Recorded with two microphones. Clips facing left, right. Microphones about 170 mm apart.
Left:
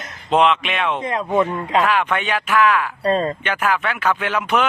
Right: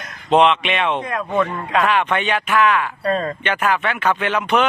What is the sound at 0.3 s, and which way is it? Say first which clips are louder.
Speech: right 2 dB; centre (ahead or behind).